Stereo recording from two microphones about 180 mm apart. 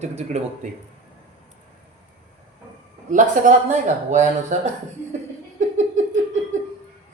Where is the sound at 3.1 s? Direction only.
45° right (ahead or behind).